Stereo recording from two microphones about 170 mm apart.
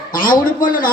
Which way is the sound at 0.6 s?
55° left (ahead or behind).